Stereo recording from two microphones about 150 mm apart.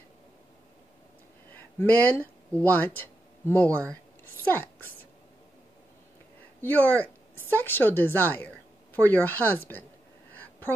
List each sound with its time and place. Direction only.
1.5 s speech: 15° left (ahead or behind)
6.6 s speech: 10° left (ahead or behind)